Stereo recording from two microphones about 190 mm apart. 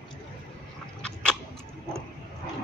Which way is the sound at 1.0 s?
5° left (ahead or behind).